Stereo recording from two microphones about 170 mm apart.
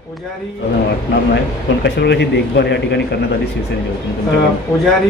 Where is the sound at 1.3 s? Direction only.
80° left.